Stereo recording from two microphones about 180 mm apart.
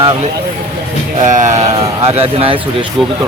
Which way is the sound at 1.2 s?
45° right (ahead or behind).